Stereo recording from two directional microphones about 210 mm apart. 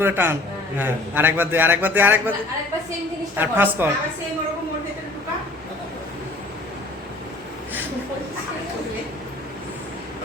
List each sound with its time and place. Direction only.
0.0 s a man's voice: 10° right (ahead or behind)
3.3 s a man's voice: 10° right (ahead or behind)